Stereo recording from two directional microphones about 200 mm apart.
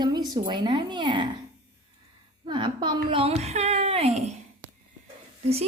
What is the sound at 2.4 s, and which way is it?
A woman's voice, 25° right (ahead or behind).